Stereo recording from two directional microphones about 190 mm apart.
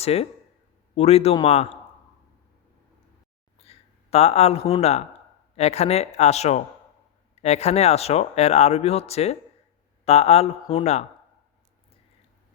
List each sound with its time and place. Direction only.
0.0 s speech: 30° left (ahead or behind)
3.6 s speech: 30° left (ahead or behind)